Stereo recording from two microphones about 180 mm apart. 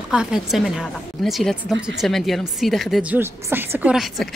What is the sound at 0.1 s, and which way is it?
Speech, 5° right (ahead or behind).